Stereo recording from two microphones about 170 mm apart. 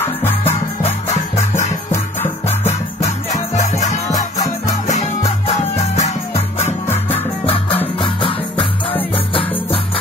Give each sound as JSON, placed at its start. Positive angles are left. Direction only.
{"t": 0.0, "sound": "music", "side_deg": 15}
{"t": 0.8, "sound": "music", "side_deg": 40}